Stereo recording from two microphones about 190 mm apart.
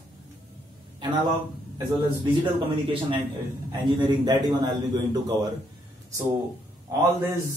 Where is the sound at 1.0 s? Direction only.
25° right (ahead or behind).